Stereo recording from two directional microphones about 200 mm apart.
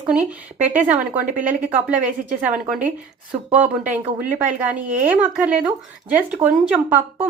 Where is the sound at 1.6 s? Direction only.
10° right (ahead or behind).